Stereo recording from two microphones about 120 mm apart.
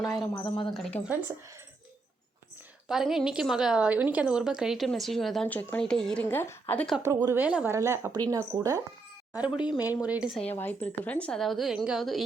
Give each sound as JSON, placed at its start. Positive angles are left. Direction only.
{"t": 0.0, "sound": "a woman's voice", "side_deg": 0}
{"t": 0.4, "sound": "speech", "side_deg": 40}
{"t": 0.7, "sound": "a woman's voice", "side_deg": 0}
{"t": 2.9, "sound": "a woman's voice", "side_deg": -5}
{"t": 5.5, "sound": "a woman's voice", "side_deg": 15}
{"t": 5.8, "sound": "a woman's voice", "side_deg": 5}
{"t": 6.2, "sound": "a woman's voice", "side_deg": 20}
{"t": 7.0, "sound": "a woman's voice", "side_deg": -25}
{"t": 7.7, "sound": "speech", "side_deg": -20}
{"t": 9.7, "sound": "a woman's voice", "side_deg": -15}
{"t": 10.4, "sound": "a woman's voice", "side_deg": 15}